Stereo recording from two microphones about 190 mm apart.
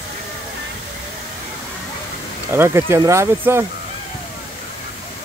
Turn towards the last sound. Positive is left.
turn(degrees=-15)  # may be behind; listen again after turning